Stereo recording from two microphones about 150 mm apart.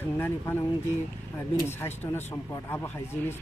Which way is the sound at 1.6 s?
15° left (ahead or behind).